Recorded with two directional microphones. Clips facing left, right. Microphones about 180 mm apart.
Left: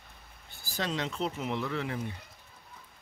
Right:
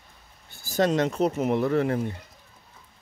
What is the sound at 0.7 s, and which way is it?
Speech, 45° right (ahead or behind).